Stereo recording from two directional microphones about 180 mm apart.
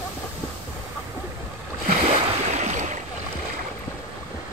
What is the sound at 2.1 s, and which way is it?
Boat, 40° right (ahead or behind).